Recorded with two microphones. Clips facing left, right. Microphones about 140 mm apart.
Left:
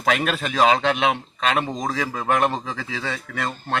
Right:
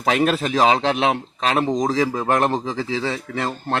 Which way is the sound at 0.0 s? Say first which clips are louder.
Right 3 dB; 30° right (ahead or behind).